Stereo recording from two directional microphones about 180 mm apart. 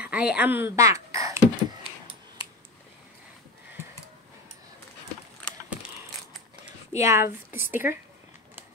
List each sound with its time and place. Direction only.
0.0 s speech: 5° right (ahead or behind)
5.7 s a sound: 5° right (ahead or behind)
6.9 s a woman's voice: 15° right (ahead or behind)